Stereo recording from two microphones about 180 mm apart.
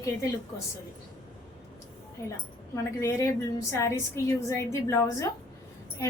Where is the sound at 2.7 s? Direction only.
15° left (ahead or behind).